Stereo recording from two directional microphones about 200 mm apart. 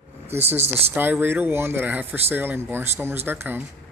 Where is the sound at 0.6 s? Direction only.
30° right (ahead or behind).